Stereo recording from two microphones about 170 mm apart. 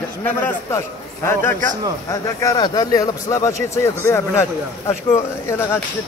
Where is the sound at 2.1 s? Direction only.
20° left (ahead or behind).